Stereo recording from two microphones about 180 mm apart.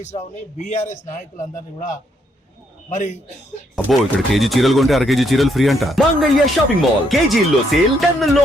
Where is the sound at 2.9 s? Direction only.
40° left (ahead or behind).